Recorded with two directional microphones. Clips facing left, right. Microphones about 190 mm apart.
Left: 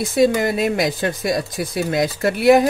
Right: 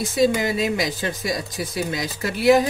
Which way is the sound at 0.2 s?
55° left (ahead or behind).